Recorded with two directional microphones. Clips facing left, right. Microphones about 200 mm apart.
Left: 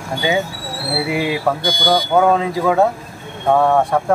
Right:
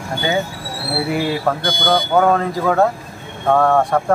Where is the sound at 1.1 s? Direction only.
10° left (ahead or behind).